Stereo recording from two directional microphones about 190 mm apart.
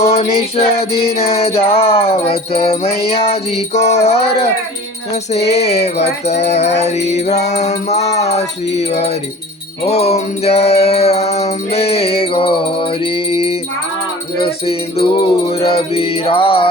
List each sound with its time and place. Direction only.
0.0 s music: 30° left (ahead or behind)